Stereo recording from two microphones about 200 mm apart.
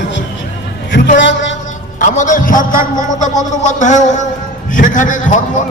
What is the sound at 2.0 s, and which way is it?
A man's voice, 40° left (ahead or behind).